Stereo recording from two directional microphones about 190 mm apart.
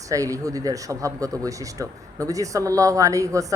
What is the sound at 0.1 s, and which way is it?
Speech, 15° right (ahead or behind).